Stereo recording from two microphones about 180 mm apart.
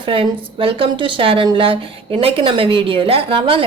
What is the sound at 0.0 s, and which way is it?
Speech, 30° right (ahead or behind).